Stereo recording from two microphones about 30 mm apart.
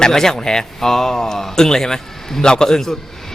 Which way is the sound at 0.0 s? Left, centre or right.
Centre.